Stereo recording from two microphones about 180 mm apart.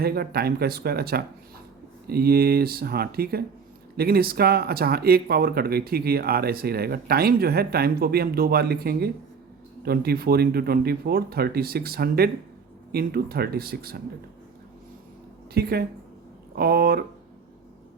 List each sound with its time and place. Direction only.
0.0 s speech: 60° right (ahead or behind)
15.5 s speech: 60° right (ahead or behind)